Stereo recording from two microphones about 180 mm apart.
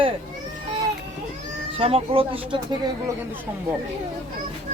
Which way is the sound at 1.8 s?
30° right (ahead or behind).